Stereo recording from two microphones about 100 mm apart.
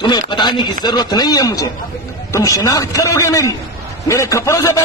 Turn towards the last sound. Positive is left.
turn(degrees=30)  # may be behind; listen again after turning